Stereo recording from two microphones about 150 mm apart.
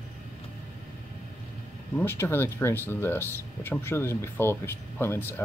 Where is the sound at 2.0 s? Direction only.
15° left (ahead or behind).